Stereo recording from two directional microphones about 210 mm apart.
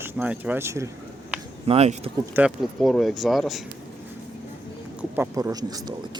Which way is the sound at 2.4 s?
Centre (ahead or behind).